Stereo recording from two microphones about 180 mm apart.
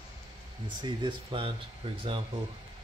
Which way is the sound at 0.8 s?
25° right (ahead or behind).